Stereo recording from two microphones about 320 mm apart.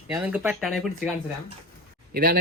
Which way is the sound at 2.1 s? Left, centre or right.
Right.